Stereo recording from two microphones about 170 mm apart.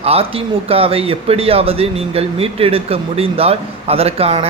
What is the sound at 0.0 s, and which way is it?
Speech, 35° right (ahead or behind).